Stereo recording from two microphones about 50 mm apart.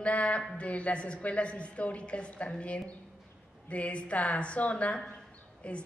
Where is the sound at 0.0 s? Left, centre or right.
Left.